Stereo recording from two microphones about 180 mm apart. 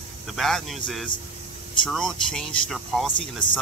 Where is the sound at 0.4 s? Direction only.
Centre (ahead or behind).